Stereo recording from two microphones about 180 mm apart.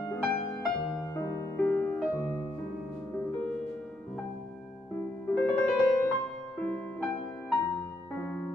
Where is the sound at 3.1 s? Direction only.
5° left (ahead or behind).